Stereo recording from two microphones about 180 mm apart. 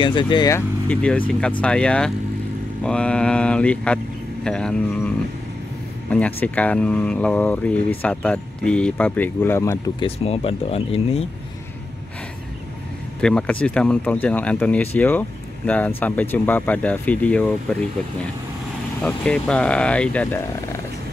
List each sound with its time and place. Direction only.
0.0 s speech: 25° left (ahead or behind)
0.8 s speech: 5° left (ahead or behind)
9.9 s speech: 35° left (ahead or behind)
13.2 s speech: 5° left (ahead or behind)
19.0 s speech: 5° left (ahead or behind)